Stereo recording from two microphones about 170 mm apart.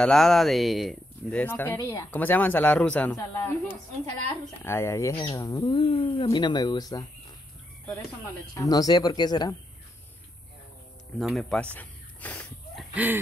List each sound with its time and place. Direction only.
0.0 s speech: centre (ahead or behind); by 5.6 s 20° left (ahead or behind)
5.6 s speech: 30° left (ahead or behind)
8.5 s speech: 20° left (ahead or behind)
11.1 s speech: centre (ahead or behind)
11.7 s a sound: 10° left (ahead or behind)
12.9 s a sound: 10° right (ahead or behind)